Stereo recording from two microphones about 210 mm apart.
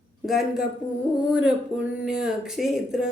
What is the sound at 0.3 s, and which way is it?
Speech, centre (ahead or behind).